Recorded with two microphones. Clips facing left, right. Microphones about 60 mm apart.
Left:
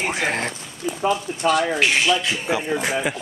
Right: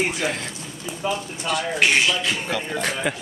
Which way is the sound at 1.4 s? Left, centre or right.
Centre.